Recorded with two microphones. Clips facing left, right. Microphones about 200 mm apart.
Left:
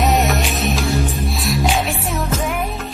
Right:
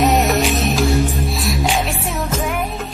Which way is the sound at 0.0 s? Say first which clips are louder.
Right 2 dB; centre (ahead or behind).